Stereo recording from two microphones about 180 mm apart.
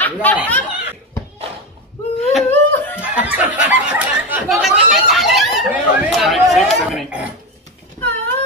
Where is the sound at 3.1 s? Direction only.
10° right (ahead or behind).